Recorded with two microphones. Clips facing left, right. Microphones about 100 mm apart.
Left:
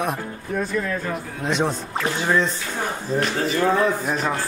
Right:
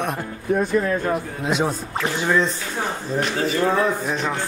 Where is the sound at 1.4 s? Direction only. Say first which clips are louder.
Right 1 dB; 5° right (ahead or behind).